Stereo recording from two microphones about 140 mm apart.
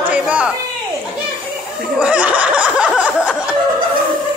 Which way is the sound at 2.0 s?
10° right (ahead or behind).